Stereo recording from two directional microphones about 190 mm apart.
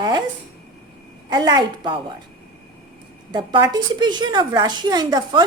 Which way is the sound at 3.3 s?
20° right (ahead or behind).